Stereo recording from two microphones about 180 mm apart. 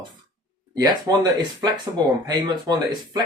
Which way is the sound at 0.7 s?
20° right (ahead or behind).